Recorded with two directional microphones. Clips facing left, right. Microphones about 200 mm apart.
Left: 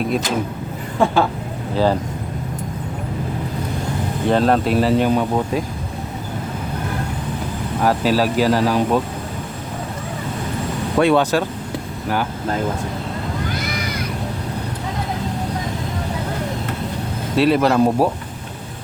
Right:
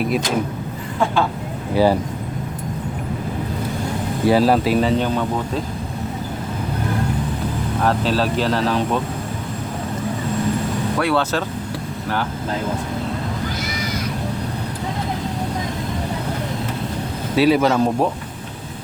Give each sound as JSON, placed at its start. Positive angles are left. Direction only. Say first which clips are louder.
{"t": 0.0, "sound": "speech", "louder": "even", "side_deg": -5}
{"t": 1.7, "sound": "speech", "louder": "right 2 dB", "side_deg": -10}
{"t": 4.3, "sound": "speech", "louder": "right 1 dB", "side_deg": -5}
{"t": 7.8, "sound": "speech", "louder": "left 2 dB", "side_deg": 10}
{"t": 10.9, "sound": "speech", "louder": "left 6 dB", "side_deg": 20}
{"t": 17.3, "sound": "speech", "louder": "even", "side_deg": 0}